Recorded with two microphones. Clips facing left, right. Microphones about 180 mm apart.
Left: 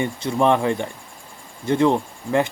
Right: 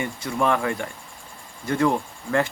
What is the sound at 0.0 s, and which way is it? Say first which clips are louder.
Speech: left 4 dB; 25° left (ahead or behind).